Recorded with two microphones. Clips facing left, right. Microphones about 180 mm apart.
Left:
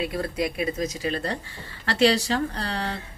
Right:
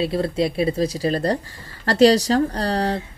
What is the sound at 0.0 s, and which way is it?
A woman's voice, 30° right (ahead or behind).